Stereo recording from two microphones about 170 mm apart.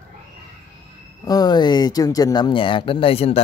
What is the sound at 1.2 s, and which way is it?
Speech, 25° left (ahead or behind).